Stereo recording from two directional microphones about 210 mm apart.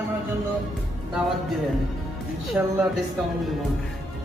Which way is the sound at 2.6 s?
10° right (ahead or behind).